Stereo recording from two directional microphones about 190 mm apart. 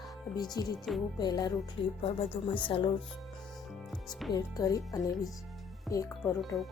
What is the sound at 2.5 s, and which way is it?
Speech, 25° left (ahead or behind).